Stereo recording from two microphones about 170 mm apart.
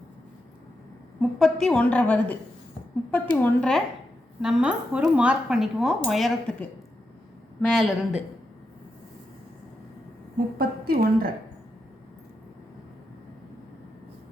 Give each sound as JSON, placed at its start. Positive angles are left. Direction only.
{"t": 1.2, "sound": "a woman's voice", "side_deg": 0}
{"t": 10.3, "sound": "a woman's voice", "side_deg": -60}